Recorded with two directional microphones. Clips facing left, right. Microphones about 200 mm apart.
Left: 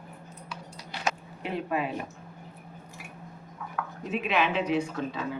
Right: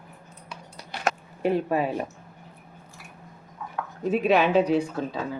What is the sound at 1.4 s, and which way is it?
Speech, 40° right (ahead or behind).